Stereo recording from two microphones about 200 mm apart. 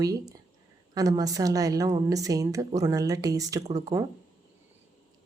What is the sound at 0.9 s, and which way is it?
A woman's voice, 20° right (ahead or behind).